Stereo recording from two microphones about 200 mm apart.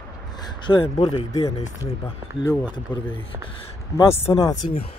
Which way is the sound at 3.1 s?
25° left (ahead or behind).